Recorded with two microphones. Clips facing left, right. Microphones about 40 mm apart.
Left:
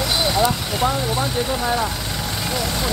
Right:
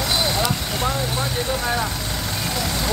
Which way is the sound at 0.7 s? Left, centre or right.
Centre.